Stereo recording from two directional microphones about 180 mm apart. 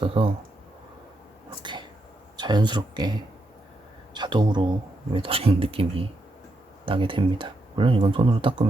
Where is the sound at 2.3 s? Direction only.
25° right (ahead or behind).